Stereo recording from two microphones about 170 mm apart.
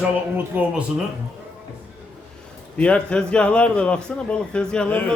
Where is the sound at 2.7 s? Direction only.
5° left (ahead or behind).